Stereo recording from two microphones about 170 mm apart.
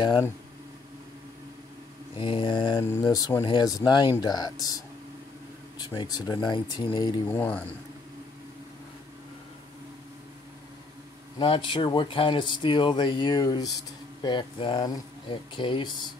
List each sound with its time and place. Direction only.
2.1 s speech: 30° left (ahead or behind)
2.8 s speech: 15° left (ahead or behind)
7.2 s speech: 10° left (ahead or behind)
11.3 s speech: 30° left (ahead or behind)